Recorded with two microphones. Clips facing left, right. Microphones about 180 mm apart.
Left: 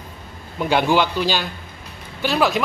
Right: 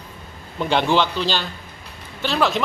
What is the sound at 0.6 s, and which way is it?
A man's voice, 10° left (ahead or behind).